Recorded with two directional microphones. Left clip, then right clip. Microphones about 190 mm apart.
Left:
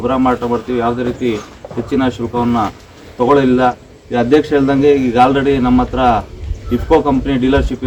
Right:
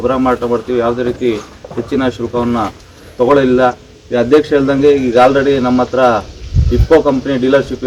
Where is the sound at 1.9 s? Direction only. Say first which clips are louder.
Right 1 dB; 35° left (ahead or behind).